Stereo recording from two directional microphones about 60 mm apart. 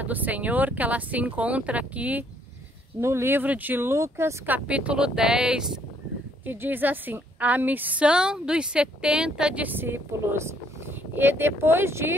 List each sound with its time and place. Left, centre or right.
0.0 s speech: right
3.0 s speech: right
3.3 s a woman's voice: right
3.9 s speech: right
4.5 s speech: right
6.4 s a woman's voice: right
8.0 s speech: centre
9.7 s speech: right